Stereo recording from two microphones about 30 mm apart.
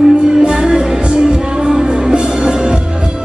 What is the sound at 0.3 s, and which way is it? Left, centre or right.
Music, centre.